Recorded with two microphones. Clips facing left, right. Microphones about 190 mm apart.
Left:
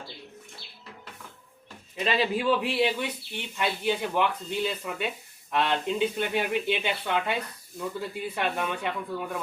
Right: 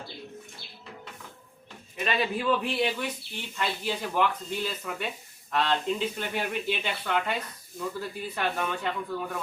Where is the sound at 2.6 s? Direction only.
5° left (ahead or behind).